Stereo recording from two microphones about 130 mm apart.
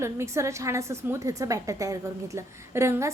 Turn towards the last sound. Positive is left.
turn(degrees=-20)  # may be behind; listen again after turning